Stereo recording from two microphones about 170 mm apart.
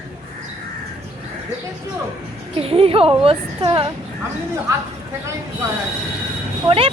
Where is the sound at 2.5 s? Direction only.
35° right (ahead or behind).